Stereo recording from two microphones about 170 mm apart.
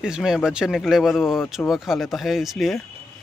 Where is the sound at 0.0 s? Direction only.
5° right (ahead or behind).